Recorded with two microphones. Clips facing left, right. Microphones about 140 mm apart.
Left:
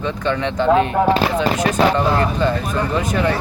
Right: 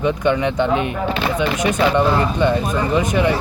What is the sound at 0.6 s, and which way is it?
Speech, 35° left (ahead or behind).